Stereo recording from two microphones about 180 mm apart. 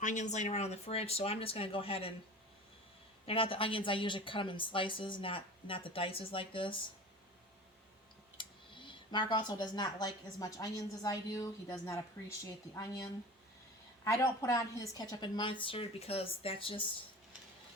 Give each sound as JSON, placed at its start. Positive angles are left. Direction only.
{"t": 0.0, "sound": "speech", "side_deg": 45}
{"t": 3.2, "sound": "speech", "side_deg": 30}
{"t": 8.4, "sound": "speech", "side_deg": 25}